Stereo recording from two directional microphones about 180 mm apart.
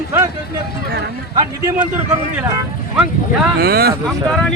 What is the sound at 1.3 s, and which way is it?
Speech, 25° right (ahead or behind).